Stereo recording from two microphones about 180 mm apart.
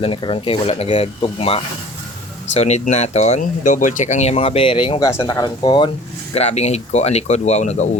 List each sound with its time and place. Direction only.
0.0 s speech: 30° left (ahead or behind)
6.3 s speech: 35° left (ahead or behind)